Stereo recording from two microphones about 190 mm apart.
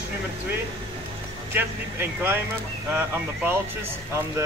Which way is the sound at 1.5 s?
10° right (ahead or behind).